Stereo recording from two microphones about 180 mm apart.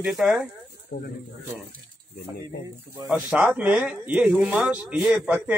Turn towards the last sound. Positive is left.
turn(degrees=-5)  # may be behind; listen again after turning